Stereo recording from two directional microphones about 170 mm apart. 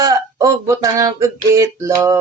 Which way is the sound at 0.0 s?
20° right (ahead or behind).